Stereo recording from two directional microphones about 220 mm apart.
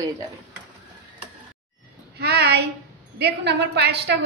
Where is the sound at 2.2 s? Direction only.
50° right (ahead or behind).